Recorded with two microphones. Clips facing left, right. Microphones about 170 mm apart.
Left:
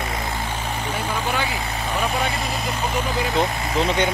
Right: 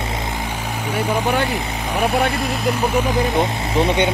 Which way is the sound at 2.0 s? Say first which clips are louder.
Right 7 dB; 60° right (ahead or behind).